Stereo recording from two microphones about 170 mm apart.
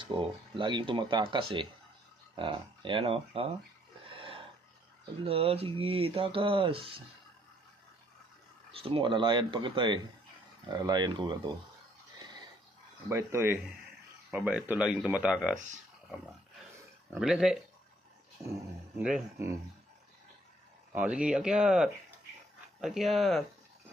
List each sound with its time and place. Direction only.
0.1 s speech: 30° right (ahead or behind)
5.2 s speech: 35° right (ahead or behind)
8.7 s speech: 30° right (ahead or behind)
13.1 s speech: 15° right (ahead or behind)
17.1 s speech: 5° right (ahead or behind)
18.9 s speech: 5° right (ahead or behind)
20.9 s speech: 5° right (ahead or behind)